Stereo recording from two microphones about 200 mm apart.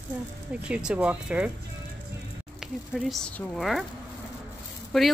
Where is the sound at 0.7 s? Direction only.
5° right (ahead or behind).